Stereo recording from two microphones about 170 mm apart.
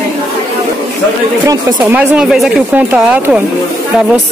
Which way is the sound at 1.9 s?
10° right (ahead or behind).